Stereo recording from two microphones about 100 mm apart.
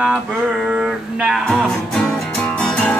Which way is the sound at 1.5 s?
5° left (ahead or behind).